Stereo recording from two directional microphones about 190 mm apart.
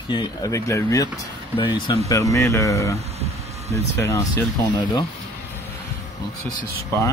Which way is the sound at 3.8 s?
15° left (ahead or behind).